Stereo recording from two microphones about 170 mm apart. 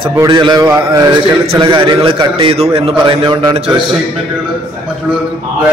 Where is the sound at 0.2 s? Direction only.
25° right (ahead or behind).